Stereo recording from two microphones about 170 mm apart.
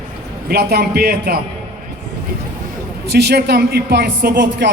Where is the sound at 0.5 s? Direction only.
65° right (ahead or behind).